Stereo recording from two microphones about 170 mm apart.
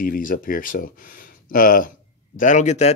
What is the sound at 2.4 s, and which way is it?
Speech, 45° left (ahead or behind).